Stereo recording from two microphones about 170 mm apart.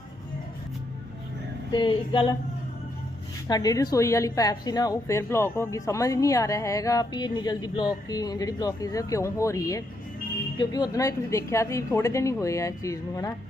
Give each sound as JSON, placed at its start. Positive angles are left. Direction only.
{"t": 1.7, "sound": "a woman's voice", "side_deg": 25}
{"t": 3.4, "sound": "a woman's voice", "side_deg": 20}